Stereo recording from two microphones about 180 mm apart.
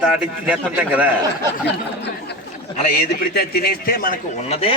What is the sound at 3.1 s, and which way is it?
Speech, 55° left (ahead or behind).